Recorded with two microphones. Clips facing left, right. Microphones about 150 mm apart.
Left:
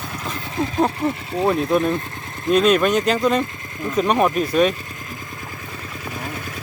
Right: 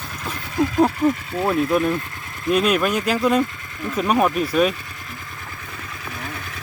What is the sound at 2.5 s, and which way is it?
Speech, 5° right (ahead or behind).